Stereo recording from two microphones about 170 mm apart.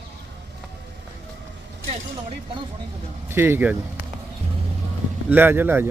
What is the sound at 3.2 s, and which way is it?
Speech, 15° right (ahead or behind).